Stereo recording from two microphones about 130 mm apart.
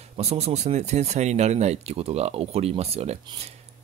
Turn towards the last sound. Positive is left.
turn(degrees=-55)  # may be behind; listen again after turning